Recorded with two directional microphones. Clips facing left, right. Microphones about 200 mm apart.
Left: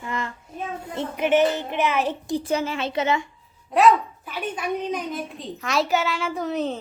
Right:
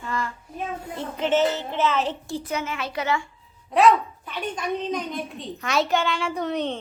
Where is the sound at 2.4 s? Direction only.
30° left (ahead or behind).